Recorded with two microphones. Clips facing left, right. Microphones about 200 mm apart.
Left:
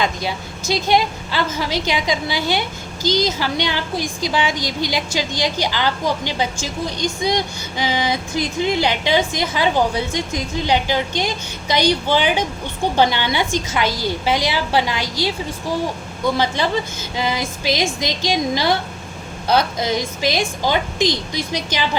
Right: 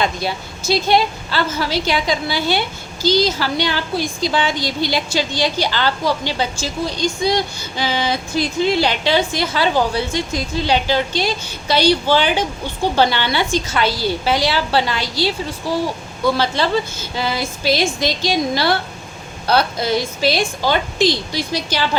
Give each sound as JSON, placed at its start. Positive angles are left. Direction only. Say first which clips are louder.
{"t": 0.0, "sound": "a woman's voice", "louder": "right 1 dB", "side_deg": 15}